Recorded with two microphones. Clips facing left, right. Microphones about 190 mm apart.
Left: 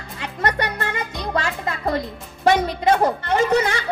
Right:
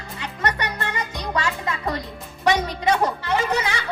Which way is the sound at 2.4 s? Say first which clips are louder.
Left 3 dB; 50° left (ahead or behind).